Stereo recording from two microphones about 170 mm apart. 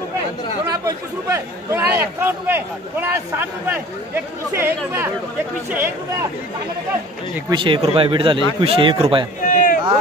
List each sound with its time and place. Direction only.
0.7 s a man's voice: 20° right (ahead or behind)
7.4 s a man's voice: 30° right (ahead or behind)
9.4 s a sound: 50° left (ahead or behind)